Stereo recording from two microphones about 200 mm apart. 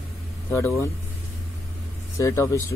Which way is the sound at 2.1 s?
15° left (ahead or behind).